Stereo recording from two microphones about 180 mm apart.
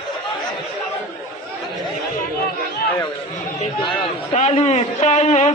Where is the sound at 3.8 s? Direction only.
35° left (ahead or behind).